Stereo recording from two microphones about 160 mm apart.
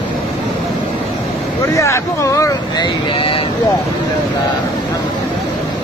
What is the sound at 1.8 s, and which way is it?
Speech, 20° left (ahead or behind).